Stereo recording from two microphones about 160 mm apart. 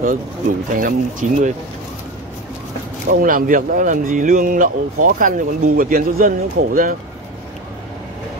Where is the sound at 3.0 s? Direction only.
60° right (ahead or behind).